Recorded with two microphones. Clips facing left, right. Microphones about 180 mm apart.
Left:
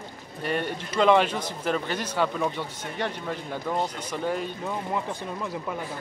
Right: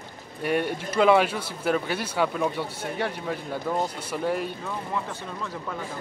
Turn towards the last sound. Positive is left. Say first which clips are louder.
# left 2 dB
turn(degrees=15)  # may be behind; listen again after turning